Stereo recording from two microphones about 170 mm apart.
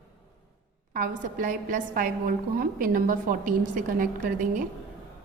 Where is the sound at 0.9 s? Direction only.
55° right (ahead or behind).